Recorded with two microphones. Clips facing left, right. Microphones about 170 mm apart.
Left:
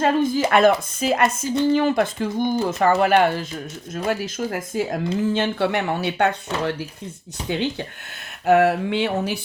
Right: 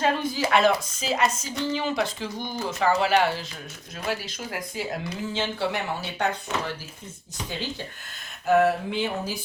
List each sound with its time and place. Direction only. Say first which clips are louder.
0.0 s speech: left 6 dB; 50° left (ahead or behind)
4.5 s speech: left 4 dB; 45° left (ahead or behind)
5.3 s speech: left 6 dB; 60° left (ahead or behind)
8.4 s a sound: left 4 dB; 70° left (ahead or behind)